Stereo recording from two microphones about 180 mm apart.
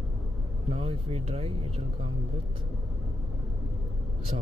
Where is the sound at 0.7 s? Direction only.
35° right (ahead or behind).